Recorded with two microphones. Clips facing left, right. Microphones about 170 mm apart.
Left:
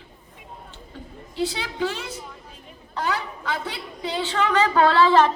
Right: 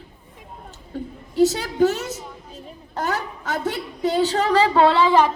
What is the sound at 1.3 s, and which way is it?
A woman's voice, 45° right (ahead or behind).